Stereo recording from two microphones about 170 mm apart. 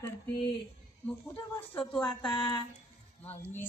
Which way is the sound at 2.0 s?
5° left (ahead or behind).